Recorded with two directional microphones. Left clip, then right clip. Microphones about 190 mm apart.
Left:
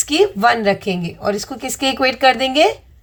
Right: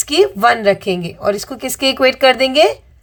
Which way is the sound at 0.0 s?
30° right (ahead or behind).